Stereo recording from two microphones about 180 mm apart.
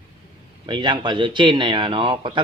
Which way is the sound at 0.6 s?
25° right (ahead or behind).